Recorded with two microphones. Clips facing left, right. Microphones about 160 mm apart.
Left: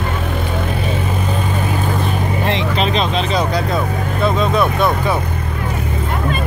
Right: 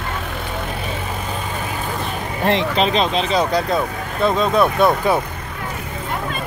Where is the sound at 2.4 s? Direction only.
45° right (ahead or behind).